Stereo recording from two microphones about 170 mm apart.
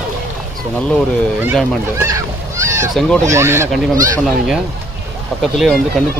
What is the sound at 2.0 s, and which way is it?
Honk, 20° right (ahead or behind).